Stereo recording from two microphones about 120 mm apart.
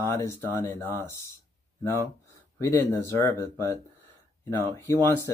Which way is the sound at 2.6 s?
25° left (ahead or behind).